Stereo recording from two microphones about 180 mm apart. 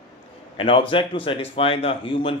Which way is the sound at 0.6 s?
30° left (ahead or behind).